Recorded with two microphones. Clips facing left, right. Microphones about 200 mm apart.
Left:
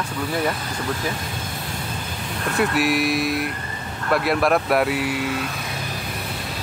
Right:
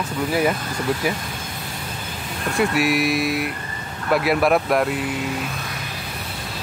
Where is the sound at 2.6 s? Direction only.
Centre (ahead or behind).